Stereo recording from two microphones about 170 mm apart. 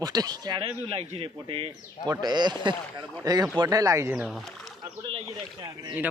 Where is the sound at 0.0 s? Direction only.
20° right (ahead or behind).